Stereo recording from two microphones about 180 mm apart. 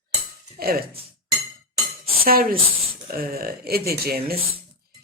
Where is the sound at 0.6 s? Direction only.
55° right (ahead or behind).